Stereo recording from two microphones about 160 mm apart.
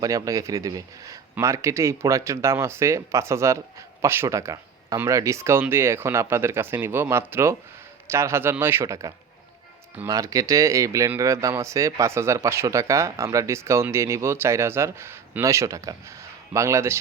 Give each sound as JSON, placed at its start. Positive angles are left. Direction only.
{"t": 0.0, "sound": "speech", "side_deg": -20}